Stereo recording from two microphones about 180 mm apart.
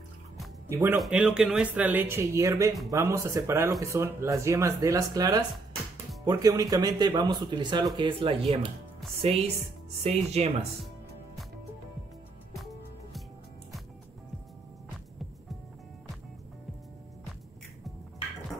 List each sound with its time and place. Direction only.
0.7 s speech: 15° right (ahead or behind)
0.9 s speech: centre (ahead or behind); by 10.5 s 35° right (ahead or behind)